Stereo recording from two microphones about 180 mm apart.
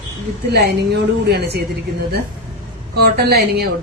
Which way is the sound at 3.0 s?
60° right (ahead or behind).